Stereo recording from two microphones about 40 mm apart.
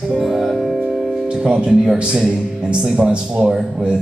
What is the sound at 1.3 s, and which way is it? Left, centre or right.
A man's voice, right.